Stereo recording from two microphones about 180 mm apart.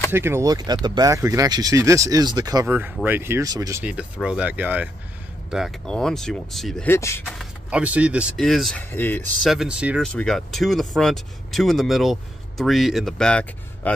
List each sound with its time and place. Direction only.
0.1 s speech: 15° right (ahead or behind)
3.8 s speech: 5° right (ahead or behind)
6.9 s speech: 15° left (ahead or behind)
7.3 s speech: 5° right (ahead or behind); by 9.5 s 10° left (ahead or behind)
9.5 s speech: 5° right (ahead or behind)